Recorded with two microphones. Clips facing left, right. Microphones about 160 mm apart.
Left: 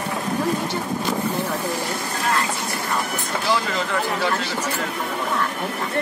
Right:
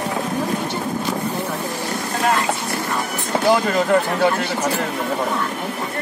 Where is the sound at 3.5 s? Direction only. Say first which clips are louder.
Right 7 dB; 50° right (ahead or behind).